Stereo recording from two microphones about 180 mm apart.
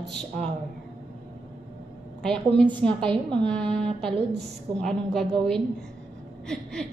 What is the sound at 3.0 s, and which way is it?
Speech, 25° right (ahead or behind).